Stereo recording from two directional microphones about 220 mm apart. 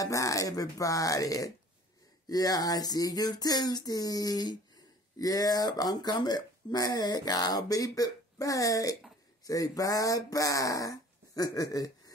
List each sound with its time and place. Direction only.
0.0 s speech: 15° left (ahead or behind)